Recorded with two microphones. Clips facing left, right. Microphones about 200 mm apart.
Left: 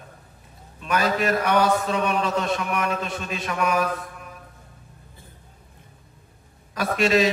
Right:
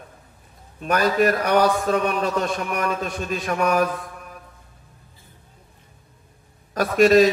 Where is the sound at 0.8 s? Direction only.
45° right (ahead or behind).